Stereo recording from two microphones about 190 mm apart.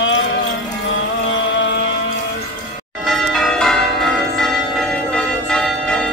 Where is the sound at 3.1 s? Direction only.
Centre (ahead or behind).